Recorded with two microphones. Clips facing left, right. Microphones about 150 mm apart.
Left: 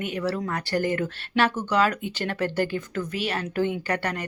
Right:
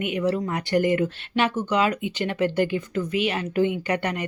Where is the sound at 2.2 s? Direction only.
10° right (ahead or behind).